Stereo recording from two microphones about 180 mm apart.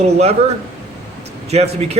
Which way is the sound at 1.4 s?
35° right (ahead or behind).